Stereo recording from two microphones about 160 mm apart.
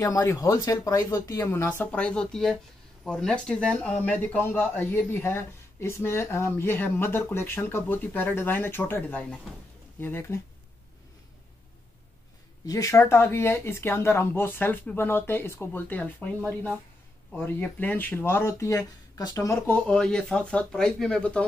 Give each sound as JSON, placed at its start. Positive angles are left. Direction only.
{"t": 0.0, "sound": "speech", "side_deg": 20}
{"t": 12.6, "sound": "speech", "side_deg": 20}